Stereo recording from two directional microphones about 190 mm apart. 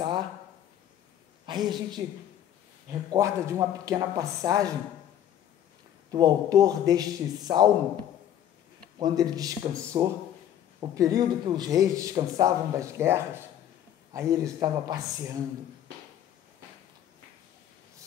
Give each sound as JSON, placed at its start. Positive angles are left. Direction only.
{"t": 1.4, "sound": "a woman's voice", "side_deg": -25}
{"t": 6.1, "sound": "speech", "side_deg": -20}
{"t": 9.0, "sound": "a man's voice", "side_deg": -20}